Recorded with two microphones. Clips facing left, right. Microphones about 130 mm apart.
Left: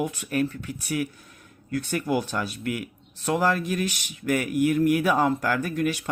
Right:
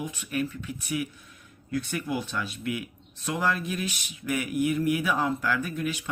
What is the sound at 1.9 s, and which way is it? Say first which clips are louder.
Speech: left 5 dB; 55° left (ahead or behind).